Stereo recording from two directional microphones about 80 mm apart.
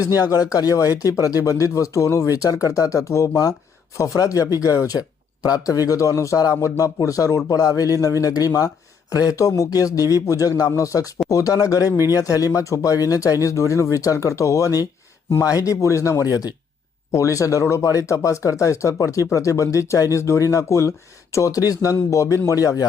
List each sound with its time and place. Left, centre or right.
0.0 s a man's voice: left
17.1 s a man's voice: left